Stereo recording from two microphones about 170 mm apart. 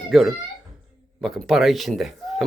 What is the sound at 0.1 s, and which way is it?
A child's voice, centre (ahead or behind).